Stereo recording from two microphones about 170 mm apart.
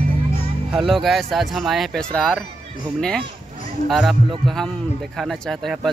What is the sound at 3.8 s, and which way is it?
Speech, centre (ahead or behind).